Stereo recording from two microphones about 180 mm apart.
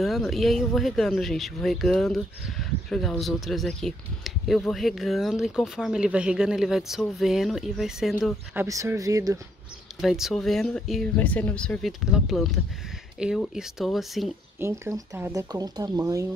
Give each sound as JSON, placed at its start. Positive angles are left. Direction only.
{"t": 0.0, "sound": "speech", "side_deg": 0}
{"t": 8.5, "sound": "speech", "side_deg": -15}
{"t": 9.9, "sound": "speech", "side_deg": 0}
{"t": 14.6, "sound": "speech", "side_deg": -15}